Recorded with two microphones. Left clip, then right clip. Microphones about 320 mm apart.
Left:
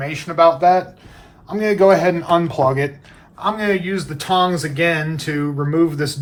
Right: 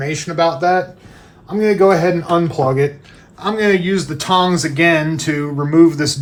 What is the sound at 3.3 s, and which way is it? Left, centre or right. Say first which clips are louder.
Speech: right 4 dB; centre.